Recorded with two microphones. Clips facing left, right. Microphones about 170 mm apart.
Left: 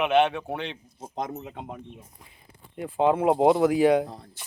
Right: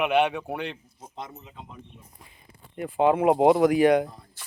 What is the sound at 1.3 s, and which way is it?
Speech, 65° left (ahead or behind).